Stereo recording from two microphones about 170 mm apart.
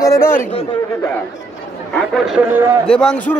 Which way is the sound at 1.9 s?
Centre (ahead or behind).